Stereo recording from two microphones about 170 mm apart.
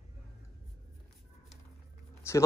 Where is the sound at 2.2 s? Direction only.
15° left (ahead or behind).